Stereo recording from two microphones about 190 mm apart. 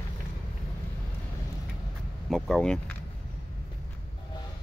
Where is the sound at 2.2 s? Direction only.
Centre (ahead or behind).